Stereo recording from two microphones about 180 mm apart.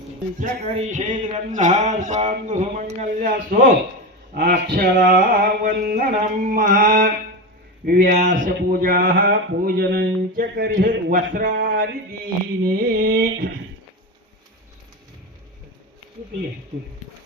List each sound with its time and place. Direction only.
0.3 s a sound: 40° right (ahead or behind)
4.4 s speech: 65° right (ahead or behind)
8.1 s speech: 40° right (ahead or behind)